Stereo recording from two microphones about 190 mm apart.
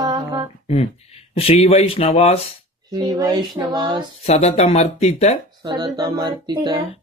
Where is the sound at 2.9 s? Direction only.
20° right (ahead or behind).